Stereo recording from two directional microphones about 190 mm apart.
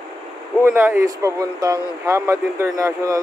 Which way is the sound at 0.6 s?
15° right (ahead or behind).